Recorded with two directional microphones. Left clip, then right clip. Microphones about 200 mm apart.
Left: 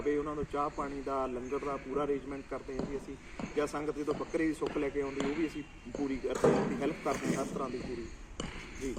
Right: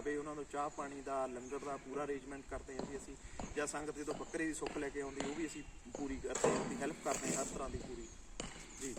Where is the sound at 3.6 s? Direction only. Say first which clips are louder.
Left 8 dB; 25° right (ahead or behind).